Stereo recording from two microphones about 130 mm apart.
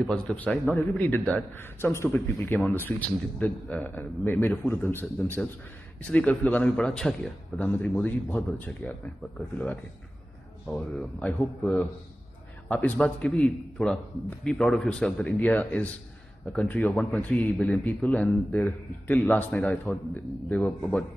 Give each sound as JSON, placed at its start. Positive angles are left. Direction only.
{"t": 0.0, "sound": "a man's voice", "side_deg": 10}
{"t": 10.7, "sound": "a man's voice", "side_deg": 5}
{"t": 16.9, "sound": "a man's voice", "side_deg": 0}